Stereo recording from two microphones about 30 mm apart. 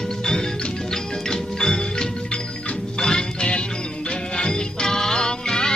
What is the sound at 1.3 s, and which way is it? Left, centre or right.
Music, left.